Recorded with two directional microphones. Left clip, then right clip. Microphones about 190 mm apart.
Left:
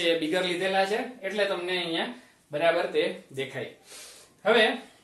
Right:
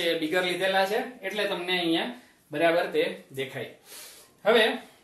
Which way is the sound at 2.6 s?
10° left (ahead or behind).